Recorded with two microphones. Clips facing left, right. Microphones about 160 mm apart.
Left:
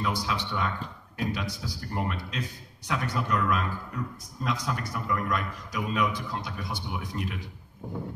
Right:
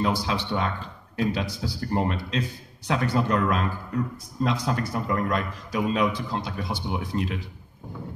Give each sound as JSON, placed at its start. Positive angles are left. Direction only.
{"t": 0.0, "sound": "a man's voice", "side_deg": -30}